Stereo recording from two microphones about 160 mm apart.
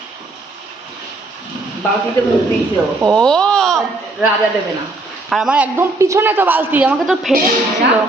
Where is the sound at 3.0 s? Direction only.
5° left (ahead or behind).